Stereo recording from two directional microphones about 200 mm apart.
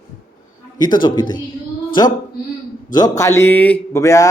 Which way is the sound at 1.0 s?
20° left (ahead or behind).